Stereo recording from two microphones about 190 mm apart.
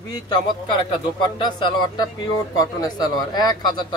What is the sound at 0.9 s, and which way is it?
Speech, 25° left (ahead or behind).